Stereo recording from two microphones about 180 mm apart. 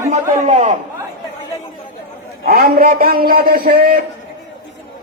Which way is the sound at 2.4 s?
60° right (ahead or behind).